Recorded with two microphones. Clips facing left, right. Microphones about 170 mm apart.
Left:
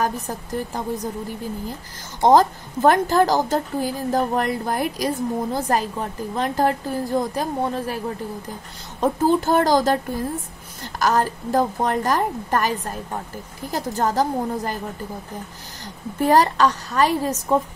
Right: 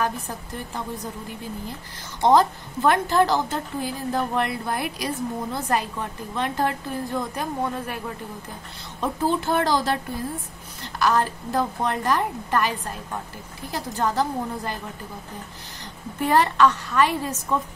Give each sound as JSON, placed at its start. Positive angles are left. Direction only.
{"t": 0.0, "sound": "a woman's voice", "side_deg": 40}
{"t": 2.2, "sound": "a woman's voice", "side_deg": 40}
{"t": 9.0, "sound": "a woman's voice", "side_deg": 45}
{"t": 16.2, "sound": "a woman's voice", "side_deg": 40}